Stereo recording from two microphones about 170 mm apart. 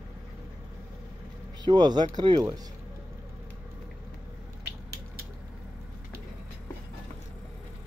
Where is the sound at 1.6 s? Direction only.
25° right (ahead or behind).